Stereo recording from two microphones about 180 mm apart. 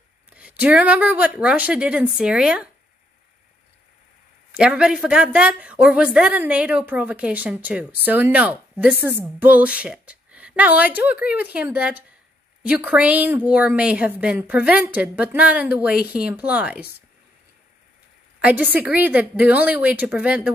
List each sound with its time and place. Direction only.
0.3 s speech: 5° right (ahead or behind)
4.5 s a woman's voice: 5° right (ahead or behind)
18.4 s speech: 10° right (ahead or behind)